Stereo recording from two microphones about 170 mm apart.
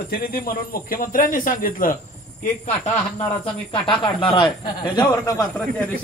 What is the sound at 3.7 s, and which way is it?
Speech, 30° left (ahead or behind).